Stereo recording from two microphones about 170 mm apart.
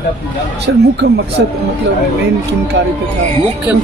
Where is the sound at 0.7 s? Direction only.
90° right.